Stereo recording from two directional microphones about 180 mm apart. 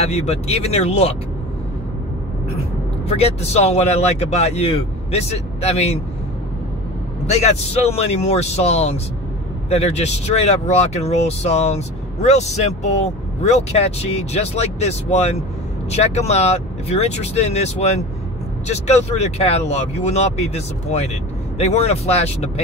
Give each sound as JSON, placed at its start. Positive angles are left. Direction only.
{"t": 0.0, "sound": "speech", "side_deg": 35}
{"t": 3.1, "sound": "speech", "side_deg": 35}
{"t": 7.2, "sound": "speech", "side_deg": 35}